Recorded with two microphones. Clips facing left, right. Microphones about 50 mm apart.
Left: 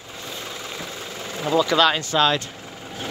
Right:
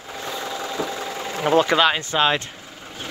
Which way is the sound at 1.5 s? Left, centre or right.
Right.